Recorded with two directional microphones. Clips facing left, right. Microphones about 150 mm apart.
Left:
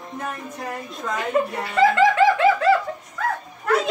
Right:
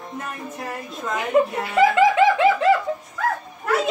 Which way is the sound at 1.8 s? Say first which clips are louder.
Right 1 dB; 20° right (ahead or behind).